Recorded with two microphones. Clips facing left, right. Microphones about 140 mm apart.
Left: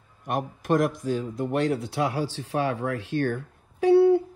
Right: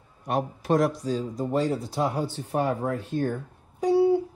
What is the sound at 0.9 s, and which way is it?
Speech, 60° left (ahead or behind).